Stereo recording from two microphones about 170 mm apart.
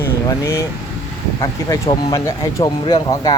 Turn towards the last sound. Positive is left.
turn(degrees=25)  # may be behind; listen again after turning